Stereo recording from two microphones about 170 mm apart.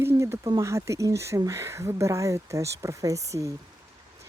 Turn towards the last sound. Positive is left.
turn(degrees=-20)  # may be behind; listen again after turning